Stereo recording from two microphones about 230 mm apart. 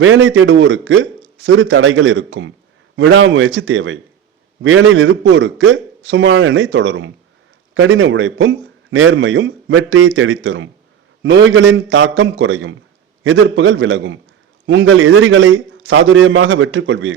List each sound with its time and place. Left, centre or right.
0.0 s a man's voice: right